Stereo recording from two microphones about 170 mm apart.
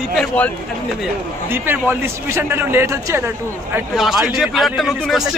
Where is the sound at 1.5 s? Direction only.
10° right (ahead or behind).